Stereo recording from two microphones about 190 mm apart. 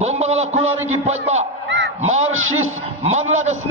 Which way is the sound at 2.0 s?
35° right (ahead or behind).